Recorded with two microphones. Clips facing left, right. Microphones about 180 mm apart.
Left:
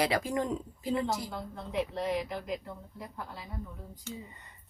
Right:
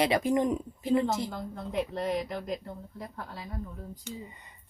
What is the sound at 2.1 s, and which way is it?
Speech, 40° right (ahead or behind).